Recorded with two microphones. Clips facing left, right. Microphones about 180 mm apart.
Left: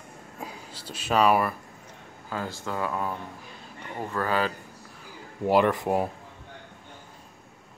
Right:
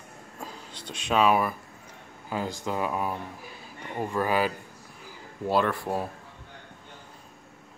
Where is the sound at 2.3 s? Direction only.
15° right (ahead or behind).